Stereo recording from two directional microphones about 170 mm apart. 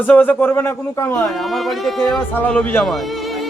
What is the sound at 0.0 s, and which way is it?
A man's voice, 10° left (ahead or behind).